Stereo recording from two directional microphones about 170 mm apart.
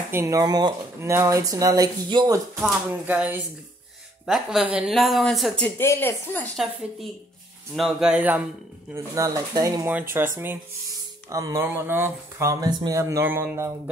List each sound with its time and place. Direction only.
0.1 s speech: 20° right (ahead or behind)
2.6 s speech: 10° right (ahead or behind)
5.8 s speech: 15° left (ahead or behind)
6.5 s speech: centre (ahead or behind); by 9.8 s 20° right (ahead or behind)
9.8 s speech: 10° right (ahead or behind)